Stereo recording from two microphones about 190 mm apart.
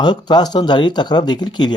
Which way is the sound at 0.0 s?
20° left (ahead or behind).